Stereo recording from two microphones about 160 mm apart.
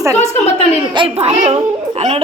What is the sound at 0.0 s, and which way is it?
Speech, 20° right (ahead or behind).